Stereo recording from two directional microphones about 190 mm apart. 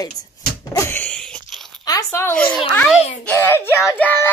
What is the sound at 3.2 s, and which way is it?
Child singing, 10° left (ahead or behind).